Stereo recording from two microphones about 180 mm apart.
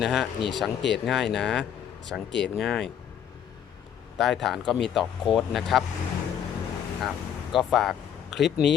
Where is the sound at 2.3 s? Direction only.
75° left (ahead or behind).